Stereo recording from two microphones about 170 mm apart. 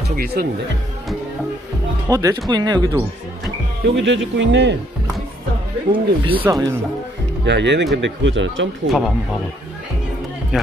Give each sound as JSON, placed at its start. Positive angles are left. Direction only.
{"t": 0.1, "sound": "speech", "side_deg": -60}
{"t": 2.0, "sound": "speech", "side_deg": -20}
{"t": 3.9, "sound": "speech", "side_deg": -90}
{"t": 5.9, "sound": "speech", "side_deg": -30}
{"t": 6.4, "sound": "speech", "side_deg": -20}
{"t": 7.4, "sound": "speech", "side_deg": -90}
{"t": 8.9, "sound": "speech", "side_deg": 0}
{"t": 10.5, "sound": "speech", "side_deg": -5}